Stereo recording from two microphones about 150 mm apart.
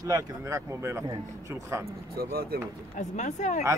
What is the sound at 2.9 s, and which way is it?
Speech, 55° left (ahead or behind).